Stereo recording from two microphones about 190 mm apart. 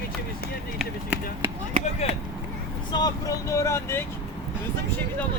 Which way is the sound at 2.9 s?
20° left (ahead or behind).